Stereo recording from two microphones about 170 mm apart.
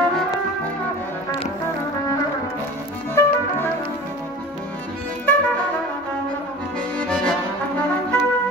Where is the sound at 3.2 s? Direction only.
15° left (ahead or behind).